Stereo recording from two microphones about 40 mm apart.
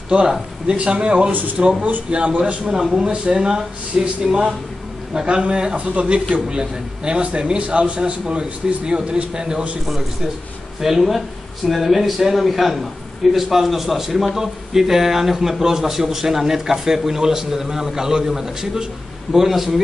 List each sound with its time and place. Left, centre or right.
0.7 s a man's voice: right
1.8 s speech: right
2.0 s a man's voice: right
10.8 s a man's voice: centre